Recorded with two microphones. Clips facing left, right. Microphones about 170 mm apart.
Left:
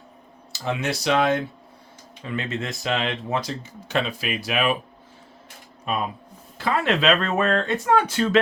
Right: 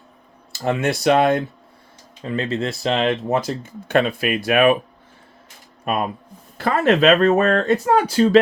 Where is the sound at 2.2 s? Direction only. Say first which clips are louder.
Right 6 dB; 35° right (ahead or behind); by 4.8 s 55° right (ahead or behind).